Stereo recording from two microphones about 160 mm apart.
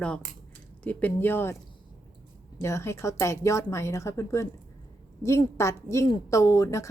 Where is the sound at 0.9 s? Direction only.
10° left (ahead or behind).